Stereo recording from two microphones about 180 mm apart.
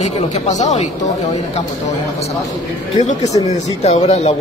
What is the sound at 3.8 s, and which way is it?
Speech, 40° left (ahead or behind).